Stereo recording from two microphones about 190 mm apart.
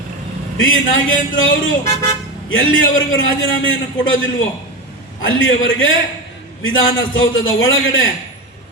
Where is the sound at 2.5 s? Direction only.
90° left.